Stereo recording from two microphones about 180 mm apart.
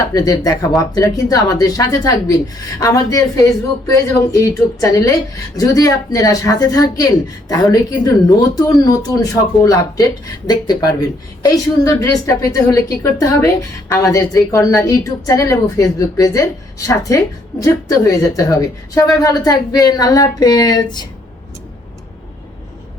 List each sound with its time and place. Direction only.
0.1 s a woman's voice: 20° left (ahead or behind)